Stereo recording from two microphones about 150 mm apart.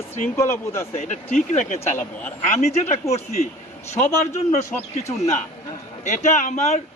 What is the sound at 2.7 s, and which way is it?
Speech, 45° left (ahead or behind).